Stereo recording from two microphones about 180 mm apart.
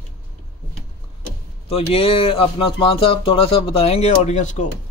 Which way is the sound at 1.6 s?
30° left (ahead or behind).